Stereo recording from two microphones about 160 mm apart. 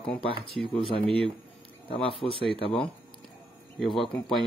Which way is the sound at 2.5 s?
35° left (ahead or behind).